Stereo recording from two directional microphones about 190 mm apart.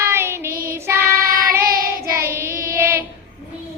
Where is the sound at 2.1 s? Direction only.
15° right (ahead or behind).